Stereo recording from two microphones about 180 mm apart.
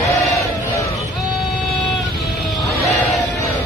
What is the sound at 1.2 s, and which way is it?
Vehicle, centre (ahead or behind).